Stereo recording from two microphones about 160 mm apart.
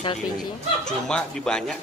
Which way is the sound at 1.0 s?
5° left (ahead or behind).